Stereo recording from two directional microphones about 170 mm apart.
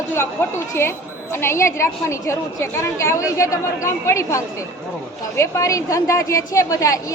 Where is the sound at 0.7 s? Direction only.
15° left (ahead or behind).